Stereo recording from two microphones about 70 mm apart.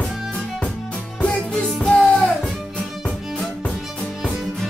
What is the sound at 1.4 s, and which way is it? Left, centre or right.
Music, centre.